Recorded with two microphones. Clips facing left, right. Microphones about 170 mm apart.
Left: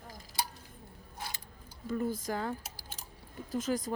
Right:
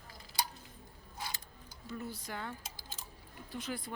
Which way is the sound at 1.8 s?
50° left (ahead or behind).